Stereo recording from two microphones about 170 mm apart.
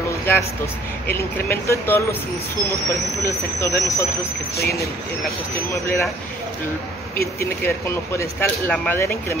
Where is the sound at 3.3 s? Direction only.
15° left (ahead or behind).